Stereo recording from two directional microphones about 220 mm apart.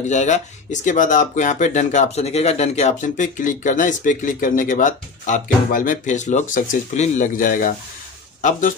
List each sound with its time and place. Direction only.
0.1 s speech: 35° left (ahead or behind)